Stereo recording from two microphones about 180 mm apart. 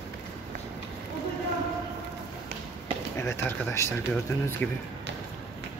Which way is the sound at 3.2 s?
15° left (ahead or behind).